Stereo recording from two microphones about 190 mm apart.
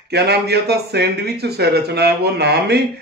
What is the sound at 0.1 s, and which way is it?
A man's voice, 60° right (ahead or behind).